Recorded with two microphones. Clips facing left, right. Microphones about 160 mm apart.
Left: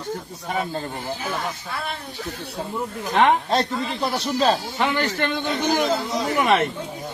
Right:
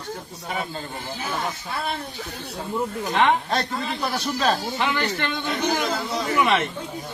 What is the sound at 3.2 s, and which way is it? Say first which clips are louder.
Speech: left 3 dB; 30° left (ahead or behind).